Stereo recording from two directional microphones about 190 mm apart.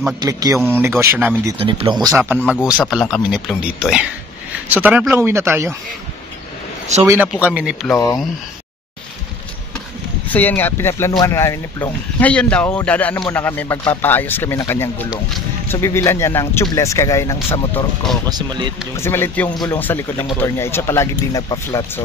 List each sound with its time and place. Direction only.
0.0 s speech: 20° right (ahead or behind)
1.6 s speech: 30° right (ahead or behind)
2.2 s speech: 10° right (ahead or behind)
6.9 s a man's voice: 35° right (ahead or behind)
7.4 s speech: 5° right (ahead or behind)
7.9 s speech: 15° left (ahead or behind)
10.2 s speech: 10° left (ahead or behind)
15.0 s speech: centre (ahead or behind)
15.7 s speech: 15° left (ahead or behind)
18.2 s speech: 20° right (ahead or behind)
18.9 s speech: 15° left (ahead or behind)